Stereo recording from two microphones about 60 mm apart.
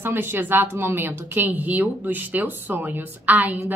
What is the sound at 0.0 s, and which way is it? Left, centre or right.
A woman's voice, right.